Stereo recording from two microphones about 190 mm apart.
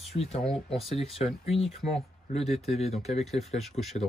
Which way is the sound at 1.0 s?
35° left (ahead or behind).